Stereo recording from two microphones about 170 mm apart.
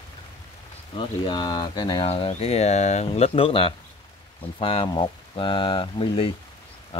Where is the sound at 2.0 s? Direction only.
35° left (ahead or behind).